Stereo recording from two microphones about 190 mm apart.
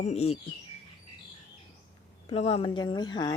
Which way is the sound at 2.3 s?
30° left (ahead or behind).